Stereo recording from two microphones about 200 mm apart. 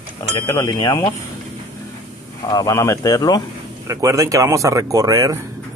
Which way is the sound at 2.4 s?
15° left (ahead or behind).